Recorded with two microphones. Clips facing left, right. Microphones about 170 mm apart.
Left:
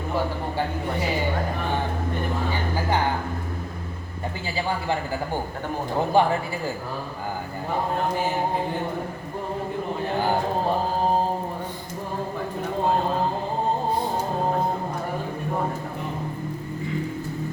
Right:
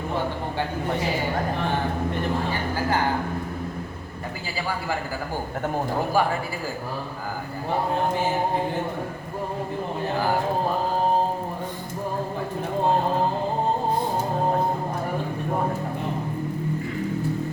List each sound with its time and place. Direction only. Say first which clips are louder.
6.2 s a man's voice: left 3 dB; 25° left (ahead or behind)